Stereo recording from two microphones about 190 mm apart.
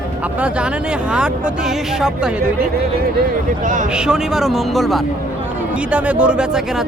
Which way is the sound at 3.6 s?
40° right (ahead or behind).